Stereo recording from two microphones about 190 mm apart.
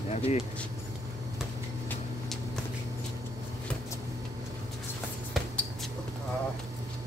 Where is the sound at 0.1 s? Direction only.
35° left (ahead or behind).